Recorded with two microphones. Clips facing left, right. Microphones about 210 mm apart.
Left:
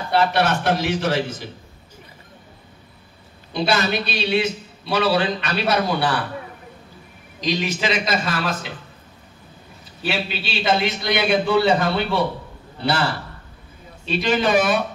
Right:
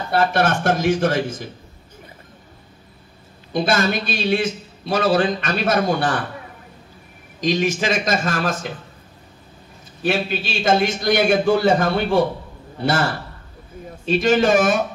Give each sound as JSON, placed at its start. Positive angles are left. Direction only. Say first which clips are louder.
{"t": 0.1, "sound": "a man's voice", "louder": "right 1 dB", "side_deg": -50}
{"t": 3.5, "sound": "a man's voice", "louder": "right 2 dB", "side_deg": -50}
{"t": 7.3, "sound": "a man's voice", "louder": "right 4 dB", "side_deg": -50}
{"t": 10.0, "sound": "a man's voice", "louder": "right 4 dB", "side_deg": -45}